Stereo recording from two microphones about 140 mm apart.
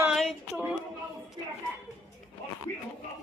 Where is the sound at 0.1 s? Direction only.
Centre (ahead or behind).